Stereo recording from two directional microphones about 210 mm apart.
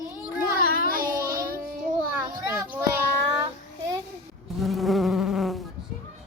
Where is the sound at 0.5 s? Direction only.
45° left (ahead or behind).